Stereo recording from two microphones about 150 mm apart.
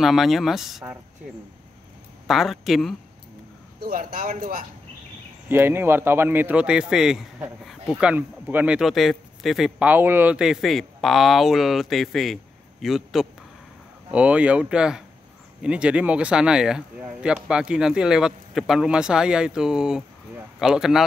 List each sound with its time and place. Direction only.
0.0 s speech: centre (ahead or behind)
2.2 s speech: centre (ahead or behind)
3.8 s speech: 65° right (ahead or behind)
5.5 s speech: 15° right (ahead or behind)